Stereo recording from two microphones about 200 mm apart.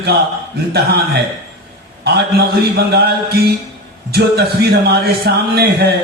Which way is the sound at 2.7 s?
55° right (ahead or behind).